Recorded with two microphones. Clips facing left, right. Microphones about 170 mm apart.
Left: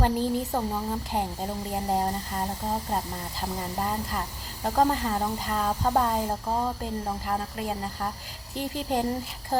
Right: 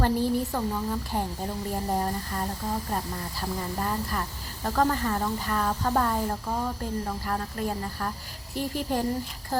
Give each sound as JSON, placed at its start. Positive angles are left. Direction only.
{"t": 0.0, "sound": "a woman's voice", "side_deg": 15}
{"t": 3.8, "sound": "a woman's voice", "side_deg": 20}